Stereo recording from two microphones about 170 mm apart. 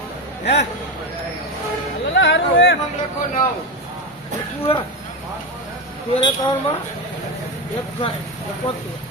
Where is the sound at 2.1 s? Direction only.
90° left.